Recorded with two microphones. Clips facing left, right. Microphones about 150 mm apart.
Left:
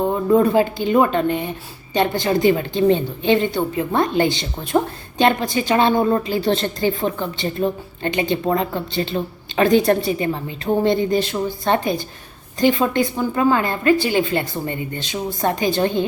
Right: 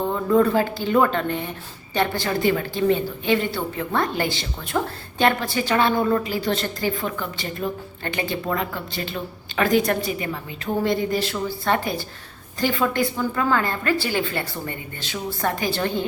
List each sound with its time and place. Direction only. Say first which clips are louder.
0.0 s speech: left 3 dB; 20° left (ahead or behind)